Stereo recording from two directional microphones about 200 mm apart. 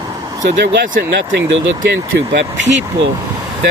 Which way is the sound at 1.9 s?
60° right (ahead or behind).